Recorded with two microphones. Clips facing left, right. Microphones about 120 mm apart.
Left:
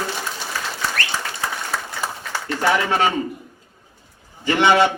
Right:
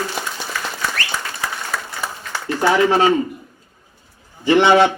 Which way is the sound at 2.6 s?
30° right (ahead or behind).